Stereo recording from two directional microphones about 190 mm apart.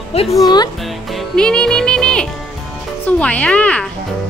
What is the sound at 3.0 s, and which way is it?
Speech, 5° left (ahead or behind).